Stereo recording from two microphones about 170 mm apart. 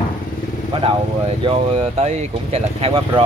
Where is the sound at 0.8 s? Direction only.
30° right (ahead or behind).